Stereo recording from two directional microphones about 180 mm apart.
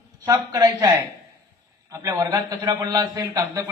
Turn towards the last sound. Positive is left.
turn(degrees=-20)  # may be behind; listen again after turning